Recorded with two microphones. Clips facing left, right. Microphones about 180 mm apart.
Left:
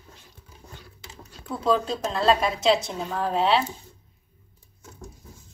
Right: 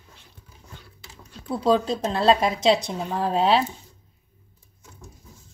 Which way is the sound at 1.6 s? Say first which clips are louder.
Right 2 dB; 35° right (ahead or behind).